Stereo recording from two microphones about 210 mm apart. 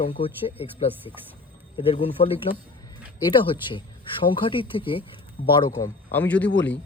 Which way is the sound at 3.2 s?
25° left (ahead or behind).